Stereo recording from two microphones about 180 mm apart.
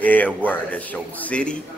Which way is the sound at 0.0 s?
10° left (ahead or behind).